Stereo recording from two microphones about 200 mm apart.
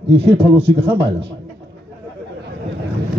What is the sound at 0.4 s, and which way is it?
Speech, 55° right (ahead or behind).